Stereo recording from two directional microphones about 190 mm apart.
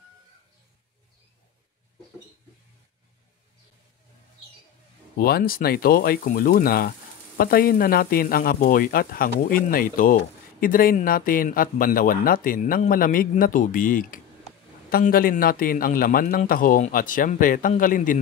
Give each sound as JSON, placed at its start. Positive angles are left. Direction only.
{"t": 5.1, "sound": "a man's voice", "side_deg": 50}